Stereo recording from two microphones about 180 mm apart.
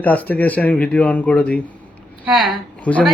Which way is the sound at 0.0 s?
10° left (ahead or behind).